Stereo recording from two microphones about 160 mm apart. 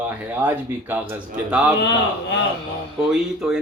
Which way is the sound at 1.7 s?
90° left.